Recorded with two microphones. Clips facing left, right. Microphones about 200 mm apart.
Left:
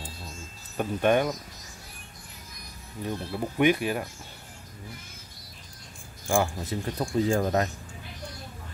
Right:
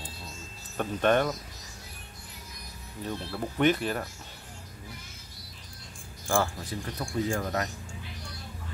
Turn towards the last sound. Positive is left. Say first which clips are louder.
# left 5 dB
turn(degrees=30)  # may be behind; listen again after turning